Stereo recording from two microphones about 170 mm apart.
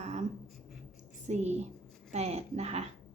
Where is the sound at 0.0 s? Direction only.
40° right (ahead or behind).